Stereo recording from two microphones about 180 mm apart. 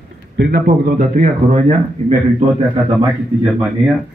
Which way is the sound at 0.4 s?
55° right (ahead or behind).